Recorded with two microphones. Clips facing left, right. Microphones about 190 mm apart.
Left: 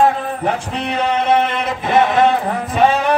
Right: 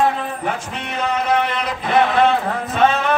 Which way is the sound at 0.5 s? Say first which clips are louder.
Left 5 dB; 35° left (ahead or behind).